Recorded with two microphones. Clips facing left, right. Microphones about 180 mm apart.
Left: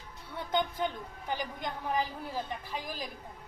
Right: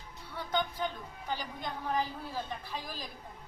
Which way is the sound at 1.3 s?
15° left (ahead or behind).